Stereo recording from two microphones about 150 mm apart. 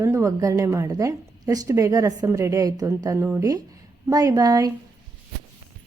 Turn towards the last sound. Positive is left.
turn(degrees=-25)  # may be behind; listen again after turning